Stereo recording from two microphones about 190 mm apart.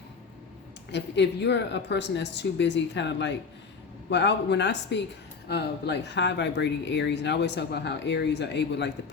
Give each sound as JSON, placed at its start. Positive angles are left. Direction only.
{"t": 0.9, "sound": "speech", "side_deg": 65}